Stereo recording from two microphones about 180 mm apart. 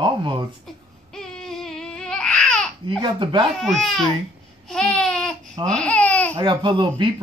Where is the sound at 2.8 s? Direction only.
30° right (ahead or behind).